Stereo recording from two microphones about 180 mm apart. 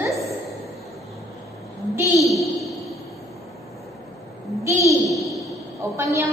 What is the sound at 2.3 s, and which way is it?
Speech, centre (ahead or behind).